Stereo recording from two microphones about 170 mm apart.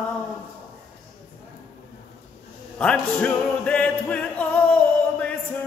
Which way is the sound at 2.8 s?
5° left (ahead or behind).